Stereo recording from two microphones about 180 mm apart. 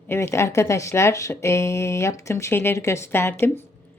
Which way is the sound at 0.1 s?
15° left (ahead or behind).